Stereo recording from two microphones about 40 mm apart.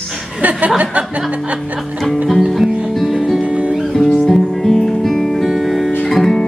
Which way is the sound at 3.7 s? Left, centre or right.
Centre.